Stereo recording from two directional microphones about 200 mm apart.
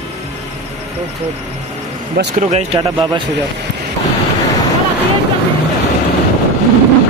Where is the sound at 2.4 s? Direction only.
35° right (ahead or behind).